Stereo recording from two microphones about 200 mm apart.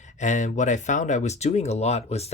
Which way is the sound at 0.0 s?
35° left (ahead or behind).